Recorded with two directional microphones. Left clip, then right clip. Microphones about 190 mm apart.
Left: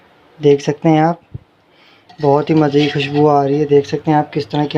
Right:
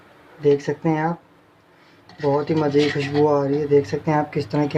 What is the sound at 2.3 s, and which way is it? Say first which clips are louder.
Speech: left 6 dB; 40° left (ahead or behind).